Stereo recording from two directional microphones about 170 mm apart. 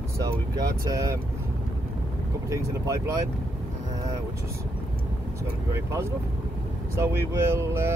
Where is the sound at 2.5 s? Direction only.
20° right (ahead or behind).